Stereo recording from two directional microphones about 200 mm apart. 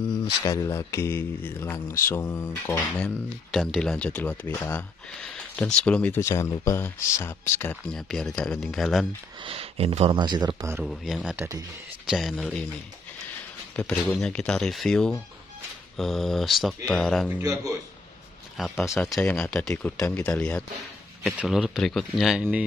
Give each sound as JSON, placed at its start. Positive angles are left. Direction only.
{"t": 0.1, "sound": "speech", "side_deg": 15}
{"t": 9.4, "sound": "speech", "side_deg": -30}
{"t": 10.8, "sound": "speech", "side_deg": 0}
{"t": 11.3, "sound": "speech", "side_deg": -15}
{"t": 12.1, "sound": "speech", "side_deg": 0}
{"t": 13.7, "sound": "speech", "side_deg": 5}
{"t": 17.3, "sound": "speech", "side_deg": -15}
{"t": 18.6, "sound": "speech", "side_deg": 0}